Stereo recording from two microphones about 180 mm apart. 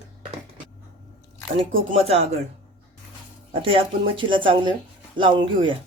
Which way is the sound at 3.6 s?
30° right (ahead or behind).